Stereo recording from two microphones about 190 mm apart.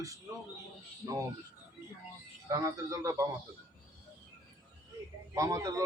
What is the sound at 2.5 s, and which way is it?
Speech, 15° right (ahead or behind).